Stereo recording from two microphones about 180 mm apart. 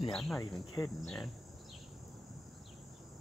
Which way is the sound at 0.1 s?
5° left (ahead or behind).